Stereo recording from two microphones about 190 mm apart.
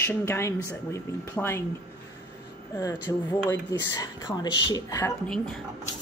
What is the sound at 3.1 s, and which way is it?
A woman's voice, 15° left (ahead or behind).